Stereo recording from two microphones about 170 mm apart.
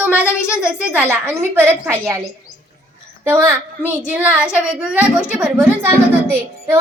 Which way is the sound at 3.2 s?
10° right (ahead or behind).